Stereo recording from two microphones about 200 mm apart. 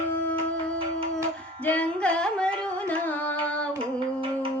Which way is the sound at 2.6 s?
5° left (ahead or behind).